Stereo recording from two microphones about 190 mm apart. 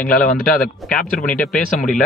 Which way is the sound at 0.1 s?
45° left (ahead or behind).